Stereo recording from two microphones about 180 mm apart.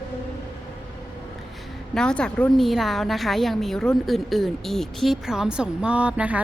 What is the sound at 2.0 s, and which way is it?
A woman's voice, 5° left (ahead or behind).